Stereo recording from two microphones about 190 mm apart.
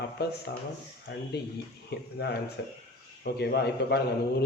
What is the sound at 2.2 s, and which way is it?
A man's voice, 60° left (ahead or behind).